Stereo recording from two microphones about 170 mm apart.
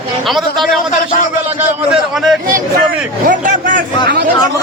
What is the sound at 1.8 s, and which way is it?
Speech, centre (ahead or behind).